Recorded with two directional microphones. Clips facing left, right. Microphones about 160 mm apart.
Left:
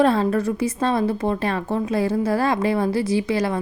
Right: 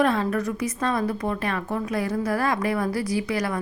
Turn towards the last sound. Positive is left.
turn(degrees=25)  # may be behind; listen again after turning